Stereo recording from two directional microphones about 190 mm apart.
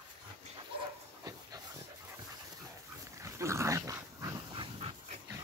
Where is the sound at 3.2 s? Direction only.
15° right (ahead or behind).